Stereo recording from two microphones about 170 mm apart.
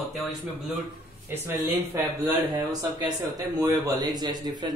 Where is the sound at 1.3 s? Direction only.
15° right (ahead or behind).